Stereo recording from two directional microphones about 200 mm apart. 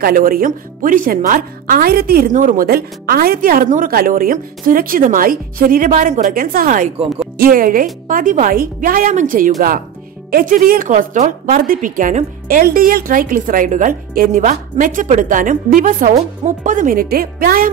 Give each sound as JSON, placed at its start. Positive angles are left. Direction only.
{"t": 0.0, "sound": "a woman's voice", "side_deg": -45}